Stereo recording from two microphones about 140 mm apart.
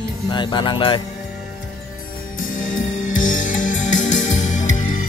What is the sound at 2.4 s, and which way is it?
Music, 70° left (ahead or behind).